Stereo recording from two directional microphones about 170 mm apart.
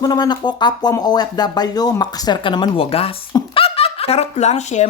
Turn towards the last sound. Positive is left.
turn(degrees=40)  # may be behind; listen again after turning